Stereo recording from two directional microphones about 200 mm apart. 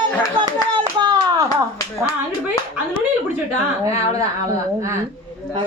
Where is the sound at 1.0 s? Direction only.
20° right (ahead or behind).